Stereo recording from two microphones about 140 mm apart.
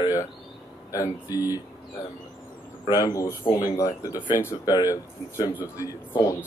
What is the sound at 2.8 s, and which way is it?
Speech, 30° left (ahead or behind).